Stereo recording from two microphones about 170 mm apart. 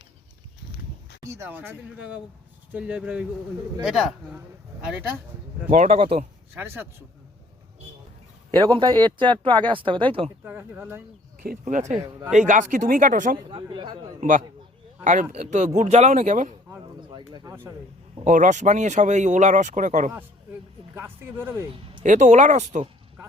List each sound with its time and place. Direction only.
1.3 s a man's voice: 10° right (ahead or behind)
5.7 s speech: 40° right (ahead or behind)
6.5 s speech: 10° right (ahead or behind)
8.4 s speech: 30° right (ahead or behind)
10.4 s speech: 10° right (ahead or behind)
11.6 s speech: 45° right (ahead or behind)
11.9 s speech: 10° right (ahead or behind)
12.3 s speech: 45° right (ahead or behind)
13.5 s speech: 30° right (ahead or behind)
14.2 s speech: 50° right (ahead or behind)
16.8 s a sound: 25° right (ahead or behind)
18.3 s speech: 50° right (ahead or behind)
20.9 s speech: 15° right (ahead or behind)
22.0 s speech: 45° right (ahead or behind)